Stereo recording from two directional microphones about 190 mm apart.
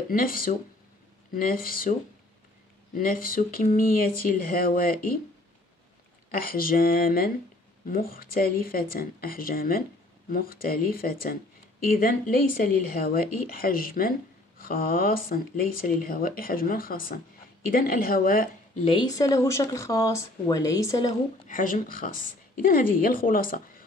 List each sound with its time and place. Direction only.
0.1 s speech: 50° left (ahead or behind)
6.4 s speech: 50° left (ahead or behind)
18.9 s speech: 20° left (ahead or behind)
21.5 s speech: 45° left (ahead or behind)